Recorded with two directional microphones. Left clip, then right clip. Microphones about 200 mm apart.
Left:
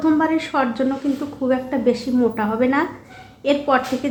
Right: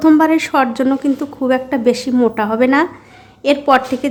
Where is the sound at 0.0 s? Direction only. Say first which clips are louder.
Right 7 dB; 35° right (ahead or behind).